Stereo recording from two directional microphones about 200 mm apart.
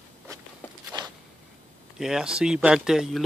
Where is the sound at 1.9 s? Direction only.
5° right (ahead or behind).